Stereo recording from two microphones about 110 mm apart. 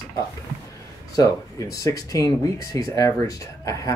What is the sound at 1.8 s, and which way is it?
Speech, 30° left (ahead or behind).